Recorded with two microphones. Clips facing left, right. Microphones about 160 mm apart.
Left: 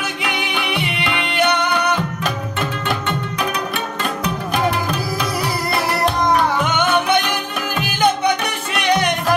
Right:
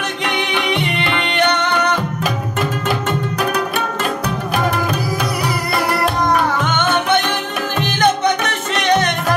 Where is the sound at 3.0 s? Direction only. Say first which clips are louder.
Right 3 dB; 45° right (ahead or behind).